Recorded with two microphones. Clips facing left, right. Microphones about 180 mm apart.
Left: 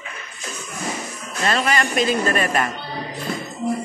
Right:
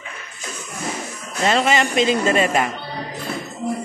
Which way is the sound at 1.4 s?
20° right (ahead or behind).